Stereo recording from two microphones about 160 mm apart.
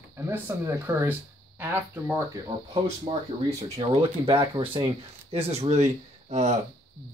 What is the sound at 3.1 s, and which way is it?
Speech, 35° right (ahead or behind).